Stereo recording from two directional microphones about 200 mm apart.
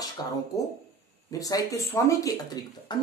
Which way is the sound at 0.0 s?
20° left (ahead or behind).